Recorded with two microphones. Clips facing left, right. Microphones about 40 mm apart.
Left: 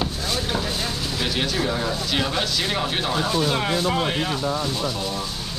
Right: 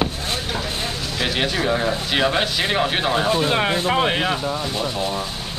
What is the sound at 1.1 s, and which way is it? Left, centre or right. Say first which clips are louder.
A man's voice: right 3 dB; right.